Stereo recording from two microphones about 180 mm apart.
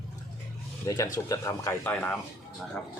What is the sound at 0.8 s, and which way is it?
Speech, 20° left (ahead or behind).